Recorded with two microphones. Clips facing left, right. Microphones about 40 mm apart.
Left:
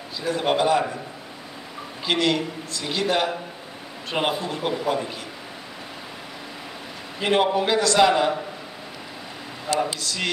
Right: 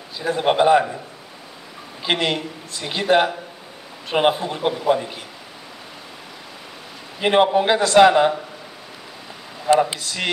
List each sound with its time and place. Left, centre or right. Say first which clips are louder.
0.2 s a man's voice: right 4 dB; right
2.0 s a man's voice: even; right
7.2 s a man's voice: right 4 dB; right
9.7 s a man's voice: right 7 dB; right